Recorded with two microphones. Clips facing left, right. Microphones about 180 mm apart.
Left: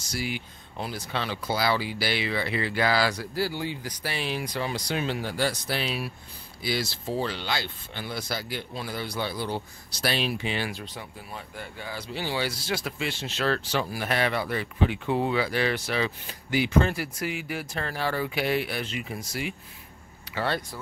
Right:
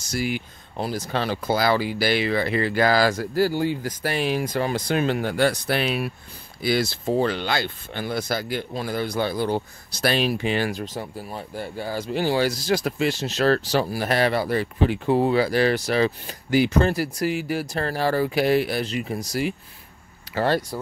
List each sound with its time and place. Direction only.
0.1 s speech: 50° right (ahead or behind)